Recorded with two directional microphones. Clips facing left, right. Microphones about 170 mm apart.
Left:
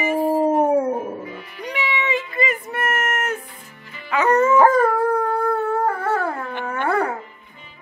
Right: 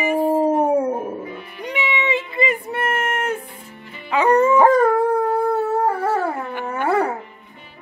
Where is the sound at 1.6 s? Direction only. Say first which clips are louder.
Right 1 dB; 20° right (ahead or behind).